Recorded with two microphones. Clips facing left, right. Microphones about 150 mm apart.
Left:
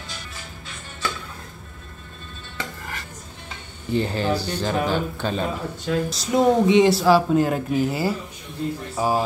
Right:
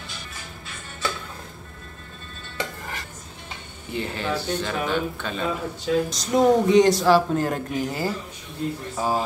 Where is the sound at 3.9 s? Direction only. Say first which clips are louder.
Left 5 dB; 35° left (ahead or behind).